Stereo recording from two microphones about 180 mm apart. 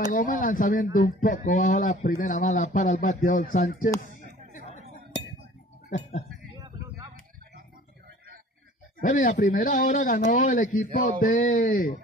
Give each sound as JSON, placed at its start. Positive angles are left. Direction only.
{"t": 0.1, "sound": "speech", "side_deg": 50}
{"t": 4.5, "sound": "chatter", "side_deg": 45}
{"t": 5.9, "sound": "speech", "side_deg": 40}
{"t": 9.0, "sound": "speech", "side_deg": 50}